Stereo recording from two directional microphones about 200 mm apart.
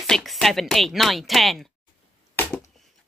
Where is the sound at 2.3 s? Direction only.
10° left (ahead or behind).